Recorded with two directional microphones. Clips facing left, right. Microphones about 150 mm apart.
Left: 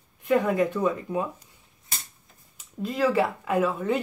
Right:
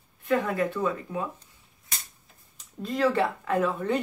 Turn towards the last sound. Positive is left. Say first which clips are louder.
# left 1 dB
turn(degrees=5)  # may be behind; listen again after turning